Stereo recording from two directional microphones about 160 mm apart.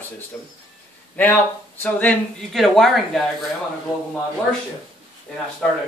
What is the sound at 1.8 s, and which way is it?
Speech, 10° left (ahead or behind).